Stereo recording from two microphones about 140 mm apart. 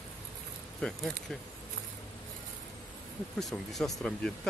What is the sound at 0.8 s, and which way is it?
Speech, 5° left (ahead or behind).